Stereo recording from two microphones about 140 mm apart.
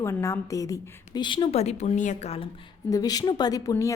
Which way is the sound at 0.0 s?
20° left (ahead or behind).